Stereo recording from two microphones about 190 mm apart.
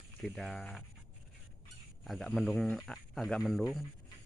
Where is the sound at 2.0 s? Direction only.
Centre (ahead or behind).